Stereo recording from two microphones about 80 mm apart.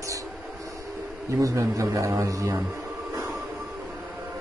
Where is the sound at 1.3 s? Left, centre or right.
Right.